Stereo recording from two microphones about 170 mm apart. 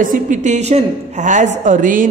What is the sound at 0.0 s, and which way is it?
A man's voice, 50° right (ahead or behind).